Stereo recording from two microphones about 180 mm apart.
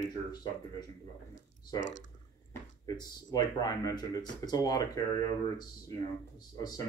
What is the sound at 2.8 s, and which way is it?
Speech, 20° left (ahead or behind).